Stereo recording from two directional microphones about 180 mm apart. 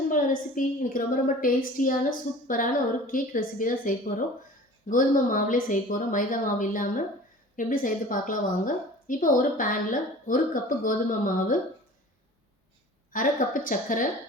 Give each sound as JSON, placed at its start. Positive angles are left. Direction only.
{"t": 0.1, "sound": "a woman's voice", "side_deg": 50}
{"t": 13.1, "sound": "a woman's voice", "side_deg": 50}